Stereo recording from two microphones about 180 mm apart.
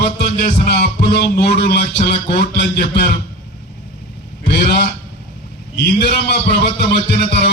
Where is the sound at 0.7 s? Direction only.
60° left (ahead or behind).